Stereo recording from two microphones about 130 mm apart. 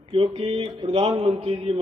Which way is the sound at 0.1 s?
50° right (ahead or behind).